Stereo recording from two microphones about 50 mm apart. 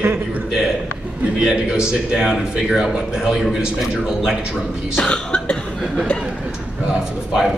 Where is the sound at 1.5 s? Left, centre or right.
Centre.